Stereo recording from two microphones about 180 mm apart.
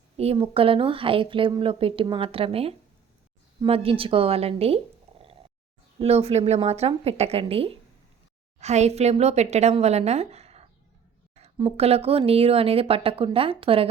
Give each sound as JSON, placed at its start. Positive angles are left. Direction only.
{"t": 0.2, "sound": "speech", "side_deg": -30}
{"t": 6.0, "sound": "speech", "side_deg": -35}